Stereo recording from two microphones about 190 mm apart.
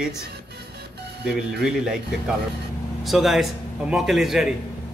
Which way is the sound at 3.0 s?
Centre (ahead or behind).